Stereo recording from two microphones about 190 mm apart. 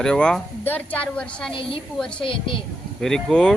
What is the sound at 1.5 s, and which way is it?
A woman's voice, 25° left (ahead or behind).